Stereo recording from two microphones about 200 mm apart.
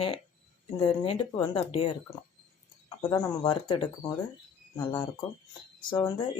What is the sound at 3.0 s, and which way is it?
Speech, 15° left (ahead or behind).